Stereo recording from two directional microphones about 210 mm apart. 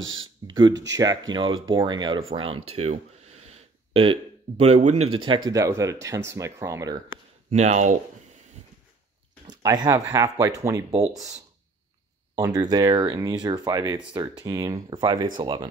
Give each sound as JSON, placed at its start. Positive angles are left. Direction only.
{"t": 0.0, "sound": "speech", "side_deg": -70}
{"t": 0.5, "sound": "speech", "side_deg": -20}
{"t": 2.7, "sound": "a sound", "side_deg": -30}
{"t": 5.1, "sound": "speech", "side_deg": -25}
{"t": 7.5, "sound": "speech", "side_deg": -35}
{"t": 9.5, "sound": "speech", "side_deg": -20}
{"t": 12.4, "sound": "speech", "side_deg": -15}